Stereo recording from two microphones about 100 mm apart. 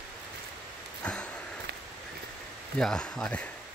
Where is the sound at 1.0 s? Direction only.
10° left (ahead or behind).